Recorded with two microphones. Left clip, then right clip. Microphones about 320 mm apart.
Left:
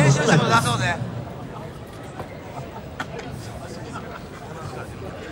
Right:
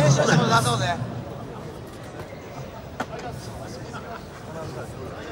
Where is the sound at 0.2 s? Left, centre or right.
Centre.